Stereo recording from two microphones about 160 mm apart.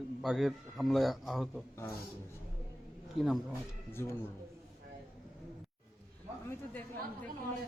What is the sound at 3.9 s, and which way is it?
Speech, 15° left (ahead or behind).